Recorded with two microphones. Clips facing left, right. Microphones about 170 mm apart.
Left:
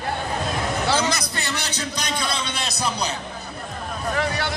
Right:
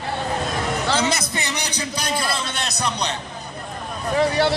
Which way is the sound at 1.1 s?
20° right (ahead or behind).